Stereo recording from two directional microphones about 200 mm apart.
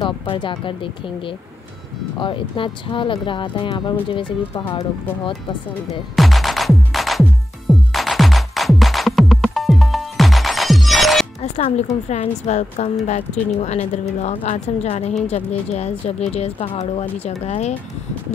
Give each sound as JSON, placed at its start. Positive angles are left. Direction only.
{"t": 0.0, "sound": "speech", "side_deg": 25}
{"t": 2.1, "sound": "speech", "side_deg": 25}
{"t": 6.1, "sound": "music", "side_deg": 0}
{"t": 11.4, "sound": "music", "side_deg": 35}
{"t": 12.1, "sound": "speech", "side_deg": 35}